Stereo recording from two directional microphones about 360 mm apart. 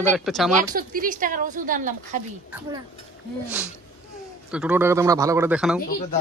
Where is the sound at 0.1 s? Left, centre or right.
Centre.